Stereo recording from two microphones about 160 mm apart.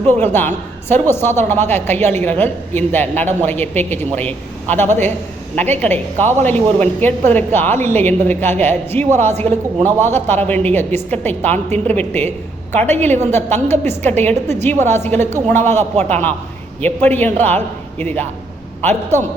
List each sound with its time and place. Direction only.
0.2 s a woman's voice: 15° left (ahead or behind)
15.8 s a man's voice: 45° right (ahead or behind)
16.8 s a woman's voice: 10° left (ahead or behind)